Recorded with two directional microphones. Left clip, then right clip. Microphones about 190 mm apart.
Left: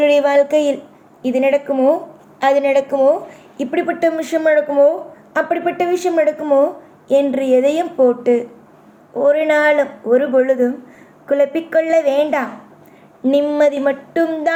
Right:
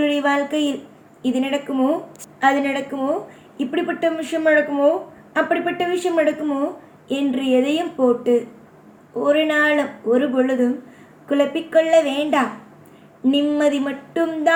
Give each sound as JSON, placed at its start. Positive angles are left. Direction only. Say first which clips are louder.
{"t": 0.0, "sound": "a woman's voice", "louder": "left 7 dB", "side_deg": 35}
{"t": 2.5, "sound": "a woman's voice", "louder": "left 7 dB", "side_deg": 45}